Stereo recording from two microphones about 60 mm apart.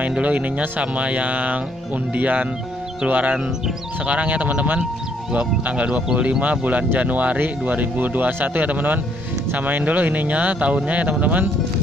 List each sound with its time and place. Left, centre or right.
0.0 s speech: right